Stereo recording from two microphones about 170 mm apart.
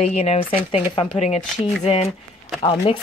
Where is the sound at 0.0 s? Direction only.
40° left (ahead or behind).